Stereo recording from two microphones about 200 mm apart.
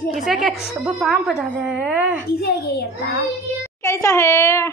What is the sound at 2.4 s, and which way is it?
Speech, 55° left (ahead or behind).